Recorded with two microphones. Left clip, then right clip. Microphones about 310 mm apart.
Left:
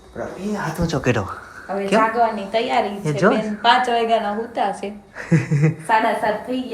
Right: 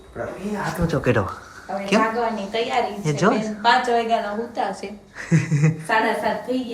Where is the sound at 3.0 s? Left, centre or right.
Centre.